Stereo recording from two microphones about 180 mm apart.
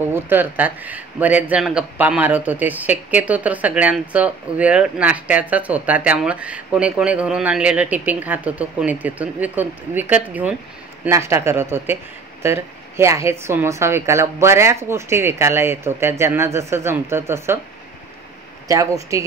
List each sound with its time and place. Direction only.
0.1 s speech: 10° right (ahead or behind)
18.7 s speech: 20° right (ahead or behind)